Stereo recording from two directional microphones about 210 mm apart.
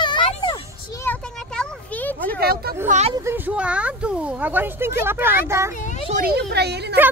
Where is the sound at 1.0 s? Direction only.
5° left (ahead or behind).